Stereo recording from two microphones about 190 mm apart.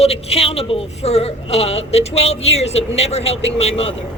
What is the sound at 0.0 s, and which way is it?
A woman's voice, 30° left (ahead or behind).